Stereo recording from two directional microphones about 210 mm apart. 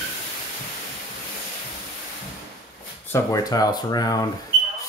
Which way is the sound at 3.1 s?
15° left (ahead or behind).